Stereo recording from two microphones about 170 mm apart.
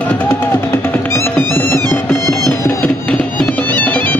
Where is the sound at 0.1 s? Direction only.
10° left (ahead or behind).